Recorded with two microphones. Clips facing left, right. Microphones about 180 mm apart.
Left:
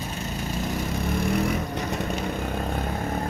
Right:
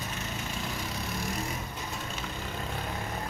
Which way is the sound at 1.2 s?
65° left (ahead or behind).